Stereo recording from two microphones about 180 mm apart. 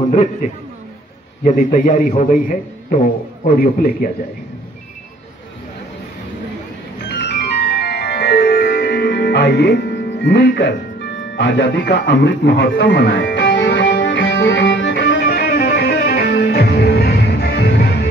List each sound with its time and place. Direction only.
0.1 s a man's voice: 40° left (ahead or behind)
7.1 s music: 60° left (ahead or behind)
11.3 s music: 80° left; by 17.8 s 65° left (ahead or behind)